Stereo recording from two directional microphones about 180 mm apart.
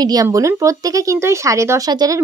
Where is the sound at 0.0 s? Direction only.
20° right (ahead or behind).